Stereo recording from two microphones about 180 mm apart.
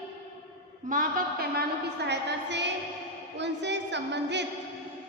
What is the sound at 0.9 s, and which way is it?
Speech, 50° right (ahead or behind).